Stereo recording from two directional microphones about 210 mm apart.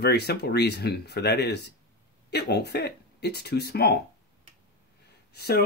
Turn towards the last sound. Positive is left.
turn(degrees=50)  # may be behind; listen again after turning